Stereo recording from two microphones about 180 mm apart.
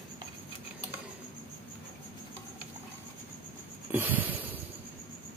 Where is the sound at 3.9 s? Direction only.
10° right (ahead or behind).